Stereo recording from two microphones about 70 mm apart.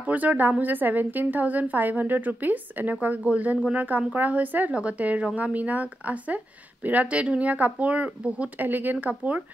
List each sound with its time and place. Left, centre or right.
0.0 s speech: right